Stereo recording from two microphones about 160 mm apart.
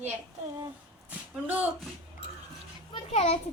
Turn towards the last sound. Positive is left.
turn(degrees=35)  # may be behind; listen again after turning